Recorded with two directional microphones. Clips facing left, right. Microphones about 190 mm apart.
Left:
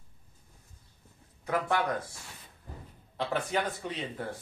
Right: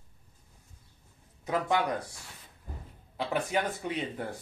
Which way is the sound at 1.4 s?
20° right (ahead or behind).